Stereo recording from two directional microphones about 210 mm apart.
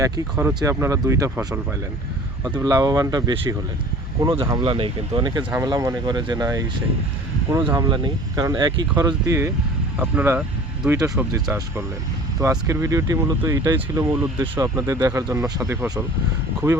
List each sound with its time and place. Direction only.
0.0 s speech: 15° right (ahead or behind)
11.1 s speech: 5° right (ahead or behind)